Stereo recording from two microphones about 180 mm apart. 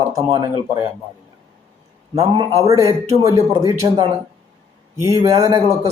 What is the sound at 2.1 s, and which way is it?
A man's voice, 20° right (ahead or behind).